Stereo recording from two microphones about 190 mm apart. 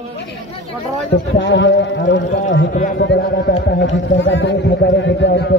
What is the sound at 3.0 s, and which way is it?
A man's voice, 70° left (ahead or behind).